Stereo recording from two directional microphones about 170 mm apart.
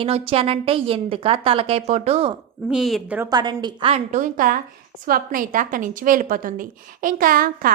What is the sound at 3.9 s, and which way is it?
A woman's voice, 45° right (ahead or behind).